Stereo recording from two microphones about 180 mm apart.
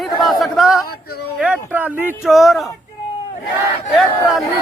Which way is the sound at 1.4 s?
10° right (ahead or behind).